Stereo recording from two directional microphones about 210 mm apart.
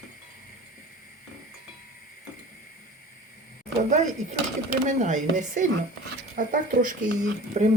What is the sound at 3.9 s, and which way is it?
Speech, 35° right (ahead or behind).